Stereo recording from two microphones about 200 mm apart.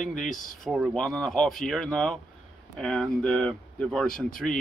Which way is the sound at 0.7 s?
Centre (ahead or behind).